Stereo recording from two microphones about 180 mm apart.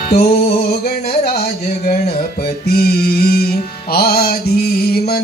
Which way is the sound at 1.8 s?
45° left (ahead or behind).